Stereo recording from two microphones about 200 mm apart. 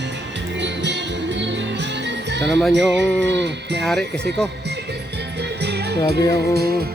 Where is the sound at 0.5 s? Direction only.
60° right (ahead or behind).